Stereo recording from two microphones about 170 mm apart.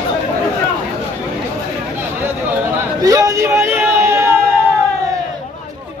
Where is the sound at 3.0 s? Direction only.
20° right (ahead or behind).